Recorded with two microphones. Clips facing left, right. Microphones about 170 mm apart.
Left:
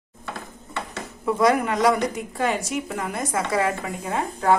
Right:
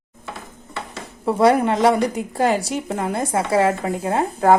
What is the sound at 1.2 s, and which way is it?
Speech, 30° right (ahead or behind).